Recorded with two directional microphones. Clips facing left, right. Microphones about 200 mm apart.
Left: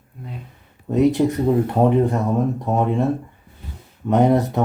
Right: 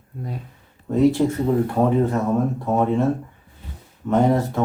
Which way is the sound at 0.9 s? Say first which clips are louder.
Left 1 dB; 15° left (ahead or behind).